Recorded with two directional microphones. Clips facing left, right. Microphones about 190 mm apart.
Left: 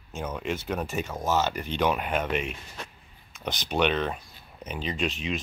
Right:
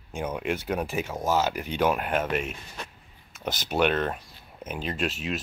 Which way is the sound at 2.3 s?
45° right (ahead or behind).